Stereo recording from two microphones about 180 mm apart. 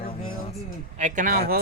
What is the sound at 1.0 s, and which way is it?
Speech, 45° right (ahead or behind).